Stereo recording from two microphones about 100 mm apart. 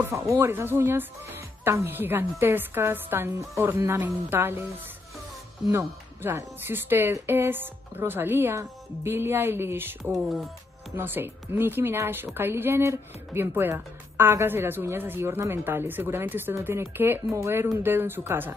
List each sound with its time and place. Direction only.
0.1 s speech: 25° right (ahead or behind)
5.7 s speech: 25° right (ahead or behind)